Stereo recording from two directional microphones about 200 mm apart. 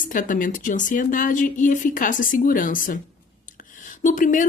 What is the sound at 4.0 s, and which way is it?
Speech, 40° left (ahead or behind).